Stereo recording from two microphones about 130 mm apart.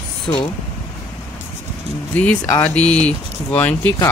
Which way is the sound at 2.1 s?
15° left (ahead or behind).